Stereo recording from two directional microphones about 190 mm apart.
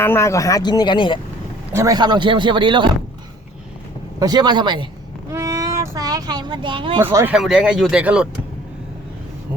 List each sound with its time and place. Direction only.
0.0 s speech: 15° left (ahead or behind)
1.7 s speech: 15° right (ahead or behind)
4.2 s speech: 20° right (ahead or behind)
5.3 s a sound: 15° right (ahead or behind)
7.0 s speech: 15° right (ahead or behind)
7.3 s speech: 5° right (ahead or behind)